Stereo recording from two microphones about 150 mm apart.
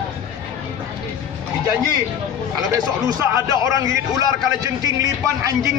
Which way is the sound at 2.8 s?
25° right (ahead or behind).